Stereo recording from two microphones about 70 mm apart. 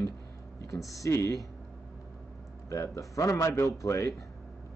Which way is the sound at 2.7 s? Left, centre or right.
Left.